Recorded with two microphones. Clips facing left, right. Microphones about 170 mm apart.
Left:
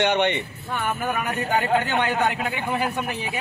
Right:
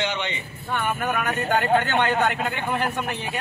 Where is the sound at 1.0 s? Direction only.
5° left (ahead or behind).